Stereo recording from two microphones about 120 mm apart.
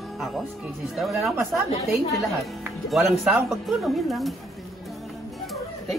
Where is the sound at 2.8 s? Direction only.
5° right (ahead or behind).